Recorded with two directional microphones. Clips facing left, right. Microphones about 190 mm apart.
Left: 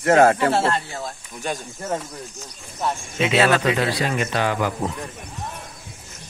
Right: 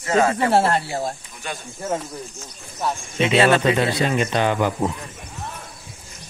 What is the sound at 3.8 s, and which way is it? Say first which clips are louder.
Speech: right 2 dB; 25° right (ahead or behind).